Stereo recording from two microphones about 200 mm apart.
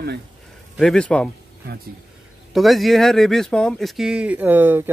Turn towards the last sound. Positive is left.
turn(degrees=-10)  # may be behind; listen again after turning